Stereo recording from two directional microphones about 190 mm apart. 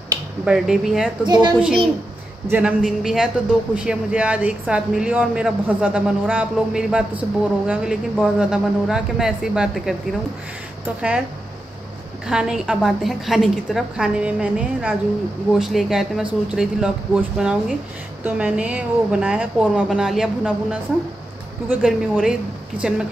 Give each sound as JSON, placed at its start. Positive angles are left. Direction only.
{"t": 0.5, "sound": "speech", "side_deg": -5}
{"t": 1.2, "sound": "a child's voice", "side_deg": -20}
{"t": 2.5, "sound": "speech", "side_deg": -5}
{"t": 11.0, "sound": "speech", "side_deg": -5}
{"t": 12.3, "sound": "speech", "side_deg": -5}